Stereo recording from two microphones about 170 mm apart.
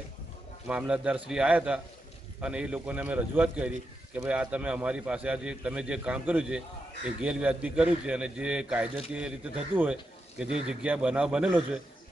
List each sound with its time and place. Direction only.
0.7 s a man's voice: 5° right (ahead or behind)